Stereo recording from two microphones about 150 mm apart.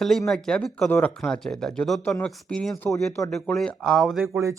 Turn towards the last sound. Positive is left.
turn(degrees=-20)  # may be behind; listen again after turning